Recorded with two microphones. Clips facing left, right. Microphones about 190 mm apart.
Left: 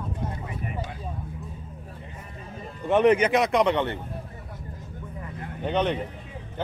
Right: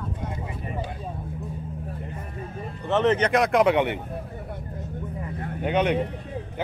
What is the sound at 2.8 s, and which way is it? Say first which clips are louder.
Speech: left 2 dB; 15° left (ahead or behind).